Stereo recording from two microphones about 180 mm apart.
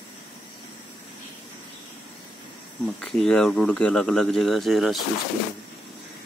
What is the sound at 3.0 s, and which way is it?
Speech, 5° left (ahead or behind).